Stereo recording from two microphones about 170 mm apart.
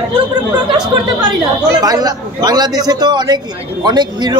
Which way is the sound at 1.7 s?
20° right (ahead or behind).